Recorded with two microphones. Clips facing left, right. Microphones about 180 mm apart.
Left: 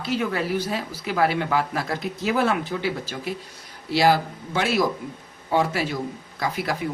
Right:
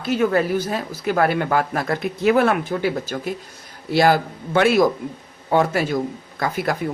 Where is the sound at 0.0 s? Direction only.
50° right (ahead or behind).